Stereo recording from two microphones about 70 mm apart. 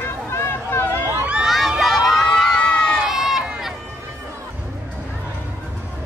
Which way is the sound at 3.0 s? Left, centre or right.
Centre.